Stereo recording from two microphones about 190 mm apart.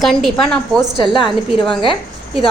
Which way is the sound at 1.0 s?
25° left (ahead or behind).